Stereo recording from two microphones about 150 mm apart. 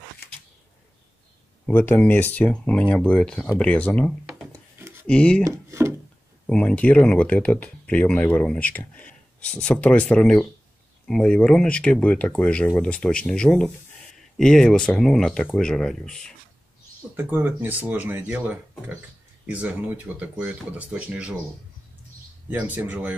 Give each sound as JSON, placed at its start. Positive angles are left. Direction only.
{"t": 1.7, "sound": "speech", "side_deg": 15}
{"t": 5.7, "sound": "speech", "side_deg": -15}
{"t": 6.4, "sound": "speech", "side_deg": 10}
{"t": 17.1, "sound": "speech", "side_deg": -15}
{"t": 22.5, "sound": "speech", "side_deg": -10}